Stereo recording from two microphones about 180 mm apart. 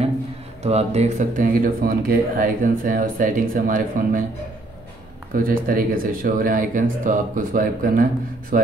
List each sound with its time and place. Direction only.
0.6 s speech: 35° right (ahead or behind)
5.3 s speech: 50° right (ahead or behind)